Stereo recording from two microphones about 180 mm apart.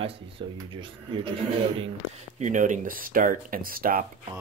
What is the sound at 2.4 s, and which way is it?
Speech, 45° right (ahead or behind).